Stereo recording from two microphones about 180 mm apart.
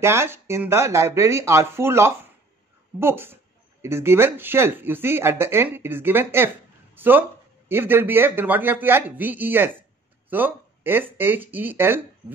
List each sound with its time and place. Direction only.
0.0 s speech: 15° right (ahead or behind)